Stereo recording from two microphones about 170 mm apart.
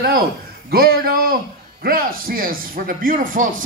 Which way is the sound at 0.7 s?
65° right (ahead or behind).